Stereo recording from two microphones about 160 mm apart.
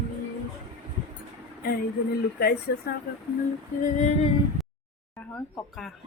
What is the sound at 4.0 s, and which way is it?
Female singing, 45° left (ahead or behind).